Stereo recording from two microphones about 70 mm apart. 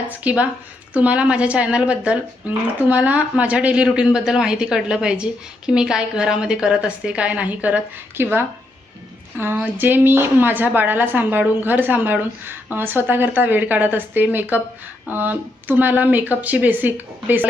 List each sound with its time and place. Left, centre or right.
0.1 s a woman's voice: right
8.2 s speech: right
9.7 s a woman's voice: right